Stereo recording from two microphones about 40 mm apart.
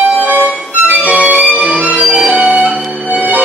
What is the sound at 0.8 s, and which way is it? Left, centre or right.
Music, right.